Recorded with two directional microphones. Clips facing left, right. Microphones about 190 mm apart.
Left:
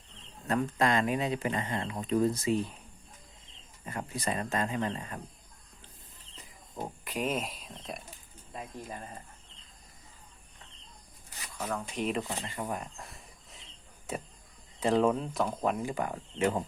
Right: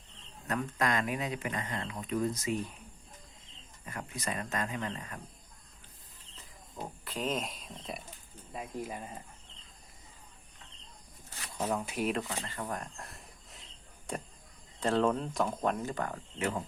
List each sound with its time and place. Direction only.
0.4 s speech: 30° left (ahead or behind)
3.8 s speech: 30° left (ahead or behind)
6.3 s a sound: 15° left (ahead or behind)
8.5 s speech: 10° right (ahead or behind)
11.6 s speech: 10° right (ahead or behind)
12.4 s speech: 15° left (ahead or behind)
14.1 s a sound: 5° left (ahead or behind)
14.8 s speech: 10° left (ahead or behind)